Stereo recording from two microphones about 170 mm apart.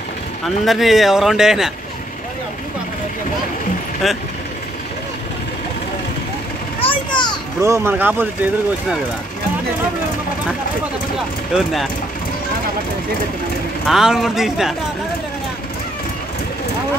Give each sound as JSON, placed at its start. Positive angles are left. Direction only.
{"t": 0.7, "sound": "speech", "side_deg": 0}
{"t": 4.0, "sound": "speech", "side_deg": 0}
{"t": 6.8, "sound": "children playing", "side_deg": 30}
{"t": 7.6, "sound": "speech", "side_deg": -15}
{"t": 11.5, "sound": "speech", "side_deg": 0}
{"t": 13.8, "sound": "speech", "side_deg": -5}